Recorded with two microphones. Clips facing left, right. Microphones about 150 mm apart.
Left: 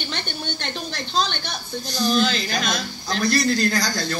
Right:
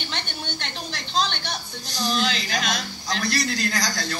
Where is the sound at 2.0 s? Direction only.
45° left (ahead or behind).